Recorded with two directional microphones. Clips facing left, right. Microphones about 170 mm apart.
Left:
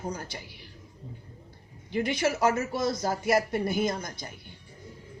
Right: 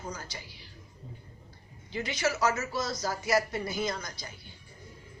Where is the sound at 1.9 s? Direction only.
55° left (ahead or behind).